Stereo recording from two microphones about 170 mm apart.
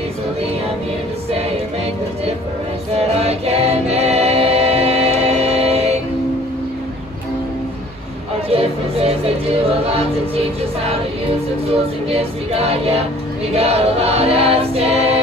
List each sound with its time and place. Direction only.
3.0 s music: 35° right (ahead or behind)
8.5 s music: 35° right (ahead or behind)
11.6 s music: 35° right (ahead or behind)
13.5 s choir: 35° right (ahead or behind)